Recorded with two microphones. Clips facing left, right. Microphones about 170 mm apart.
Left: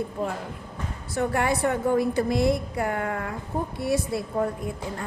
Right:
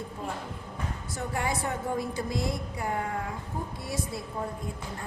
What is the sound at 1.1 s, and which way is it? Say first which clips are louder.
A woman's voice: left 8 dB; 70° left (ahead or behind).